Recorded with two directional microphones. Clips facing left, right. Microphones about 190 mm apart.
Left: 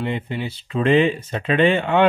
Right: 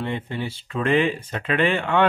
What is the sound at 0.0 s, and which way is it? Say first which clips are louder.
Speech: left 2 dB; 20° left (ahead or behind).